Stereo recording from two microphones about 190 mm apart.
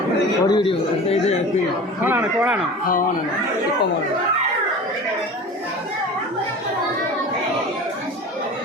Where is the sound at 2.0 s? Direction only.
10° right (ahead or behind).